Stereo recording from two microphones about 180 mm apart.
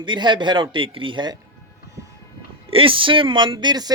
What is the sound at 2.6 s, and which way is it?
Speech, 30° right (ahead or behind).